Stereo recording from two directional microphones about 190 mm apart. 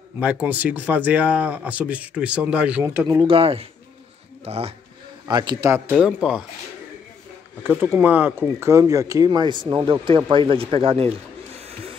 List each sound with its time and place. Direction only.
0.2 s speech: 5° right (ahead or behind)
3.3 s speech: 30° right (ahead or behind)
5.9 s speech: 5° right (ahead or behind)
7.6 s speech: 10° right (ahead or behind); by 11.1 s 30° right (ahead or behind)